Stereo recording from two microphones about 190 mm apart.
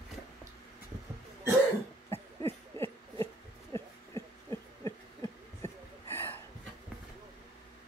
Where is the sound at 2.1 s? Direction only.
30° right (ahead or behind).